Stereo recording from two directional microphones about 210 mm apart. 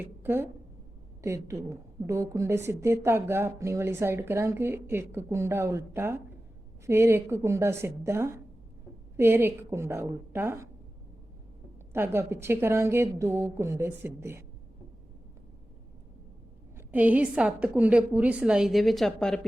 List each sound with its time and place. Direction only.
0.0 s a woman's voice: 10° right (ahead or behind)
11.9 s a woman's voice: 10° right (ahead or behind)
16.7 s a woman's voice: 10° right (ahead or behind)